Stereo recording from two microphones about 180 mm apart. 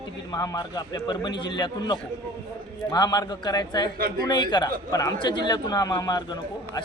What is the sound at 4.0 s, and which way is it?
Speech, 55° right (ahead or behind).